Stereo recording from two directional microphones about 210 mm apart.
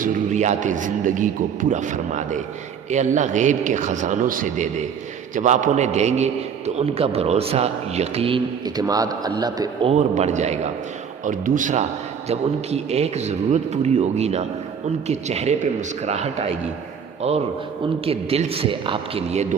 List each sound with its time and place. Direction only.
0.0 s a man's voice: 35° right (ahead or behind); by 9.9 s 20° right (ahead or behind)
9.9 s a man's voice: 30° right (ahead or behind)
18.0 s a man's voice: 30° right (ahead or behind)